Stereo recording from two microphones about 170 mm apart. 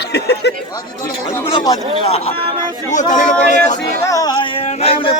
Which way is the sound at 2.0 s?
35° left (ahead or behind).